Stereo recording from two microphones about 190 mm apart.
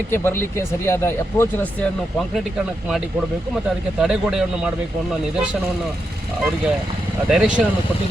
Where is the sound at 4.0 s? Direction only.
Centre (ahead or behind).